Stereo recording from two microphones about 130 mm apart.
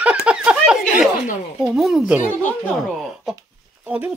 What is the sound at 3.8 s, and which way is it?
Speech, 10° right (ahead or behind).